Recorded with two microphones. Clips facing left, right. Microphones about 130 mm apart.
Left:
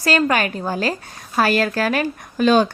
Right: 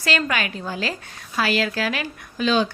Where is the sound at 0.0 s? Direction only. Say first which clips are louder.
Left 6 dB; 40° left (ahead or behind).